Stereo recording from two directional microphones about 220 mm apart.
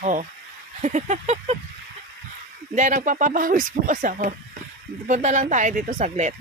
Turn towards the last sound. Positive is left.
turn(degrees=-35)  # may be behind; listen again after turning